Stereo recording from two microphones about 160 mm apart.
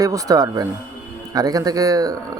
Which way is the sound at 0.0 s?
20° right (ahead or behind).